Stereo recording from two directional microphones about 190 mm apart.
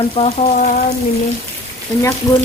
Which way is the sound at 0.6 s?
45° left (ahead or behind).